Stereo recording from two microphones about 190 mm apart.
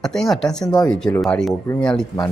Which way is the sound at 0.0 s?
Centre (ahead or behind).